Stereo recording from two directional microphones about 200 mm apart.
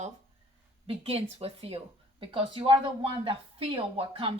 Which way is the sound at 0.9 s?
30° right (ahead or behind).